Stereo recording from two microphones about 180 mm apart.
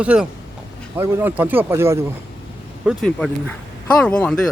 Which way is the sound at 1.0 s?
15° right (ahead or behind).